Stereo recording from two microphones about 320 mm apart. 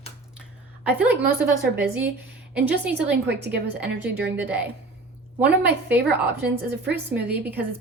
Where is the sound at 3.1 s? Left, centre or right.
Right.